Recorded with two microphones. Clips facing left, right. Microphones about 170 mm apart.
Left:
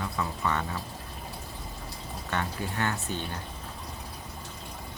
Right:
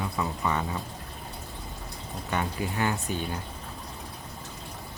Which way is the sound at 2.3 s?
10° right (ahead or behind).